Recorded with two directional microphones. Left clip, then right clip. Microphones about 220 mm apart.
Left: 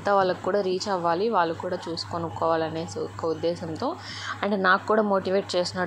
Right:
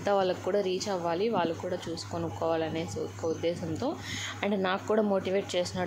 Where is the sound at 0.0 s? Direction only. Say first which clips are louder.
Left 5 dB; centre (ahead or behind).